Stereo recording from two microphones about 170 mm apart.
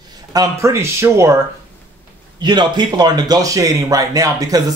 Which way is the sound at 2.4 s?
25° right (ahead or behind).